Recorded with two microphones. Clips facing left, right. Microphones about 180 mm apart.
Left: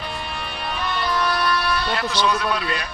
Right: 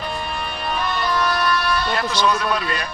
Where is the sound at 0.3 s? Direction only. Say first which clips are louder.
Right 3 dB; 50° right (ahead or behind).